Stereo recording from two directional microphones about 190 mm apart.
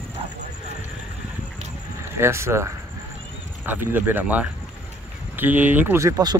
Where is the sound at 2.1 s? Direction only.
15° right (ahead or behind).